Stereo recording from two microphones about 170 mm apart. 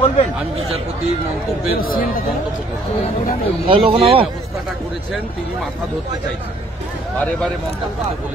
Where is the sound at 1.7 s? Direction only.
60° left (ahead or behind).